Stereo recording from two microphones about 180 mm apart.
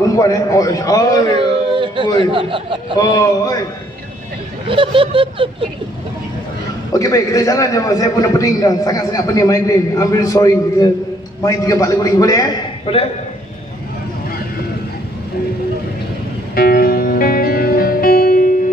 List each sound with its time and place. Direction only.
0.0 s a man's voice: 20° left (ahead or behind)
1.4 s a sound: 30° right (ahead or behind)
3.0 s a man's voice: 20° left (ahead or behind)
4.6 s a sound: 30° right (ahead or behind)
6.9 s a man's voice: 20° left (ahead or behind)
16.5 s music: 55° left (ahead or behind)